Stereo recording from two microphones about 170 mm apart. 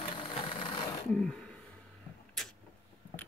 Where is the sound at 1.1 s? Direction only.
5° left (ahead or behind).